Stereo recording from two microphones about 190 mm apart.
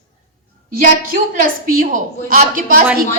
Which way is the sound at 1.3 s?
45° right (ahead or behind).